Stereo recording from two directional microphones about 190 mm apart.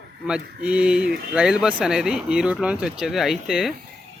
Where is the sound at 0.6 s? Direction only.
5° right (ahead or behind).